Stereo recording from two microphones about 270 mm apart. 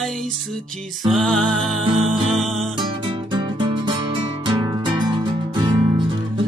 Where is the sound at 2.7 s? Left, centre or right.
Centre.